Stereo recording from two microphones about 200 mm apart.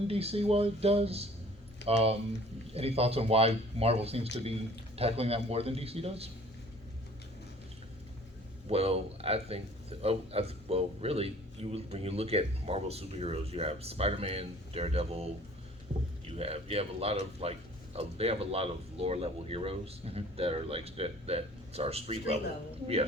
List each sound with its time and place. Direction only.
0.1 s speech: 30° right (ahead or behind)
8.6 s speech: 30° right (ahead or behind)
16.4 s speech: 30° right (ahead or behind)